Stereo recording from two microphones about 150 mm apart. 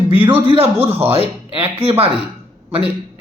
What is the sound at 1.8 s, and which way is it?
Speech, 40° right (ahead or behind).